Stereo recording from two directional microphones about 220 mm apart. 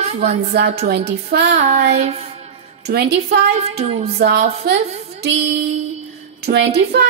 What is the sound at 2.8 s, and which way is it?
Child singing, 45° right (ahead or behind).